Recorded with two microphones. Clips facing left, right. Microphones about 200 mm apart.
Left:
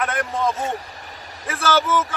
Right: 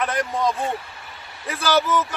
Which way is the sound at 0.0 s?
Centre (ahead or behind).